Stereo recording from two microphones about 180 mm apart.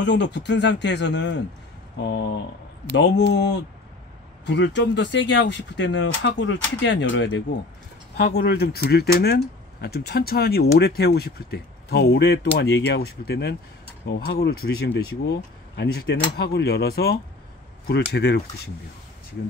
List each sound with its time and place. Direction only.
0.0 s speech: 75° left (ahead or behind); by 7.4 s 90° left
8.2 s speech: 65° left (ahead or behind)